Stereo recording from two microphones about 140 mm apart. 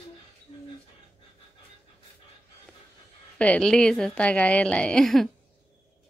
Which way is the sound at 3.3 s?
5° left (ahead or behind).